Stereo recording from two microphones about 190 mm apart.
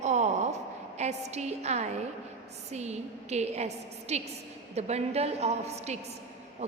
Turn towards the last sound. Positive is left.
turn(degrees=-35)  # may be behind; listen again after turning